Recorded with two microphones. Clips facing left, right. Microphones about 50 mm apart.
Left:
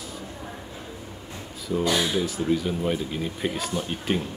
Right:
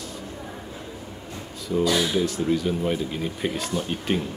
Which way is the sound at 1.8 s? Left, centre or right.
Left.